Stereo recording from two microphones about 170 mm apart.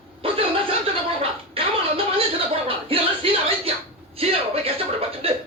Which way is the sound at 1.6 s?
35° right (ahead or behind).